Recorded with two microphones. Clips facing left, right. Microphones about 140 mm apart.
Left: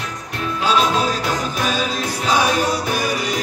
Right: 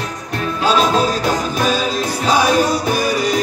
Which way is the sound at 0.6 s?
35° right (ahead or behind).